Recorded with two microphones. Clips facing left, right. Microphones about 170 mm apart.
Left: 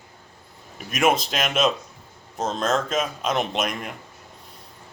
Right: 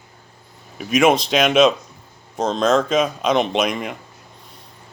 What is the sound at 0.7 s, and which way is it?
Speech, centre (ahead or behind).